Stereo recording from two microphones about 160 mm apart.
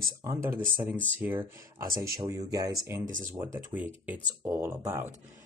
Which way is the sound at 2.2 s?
25° right (ahead or behind).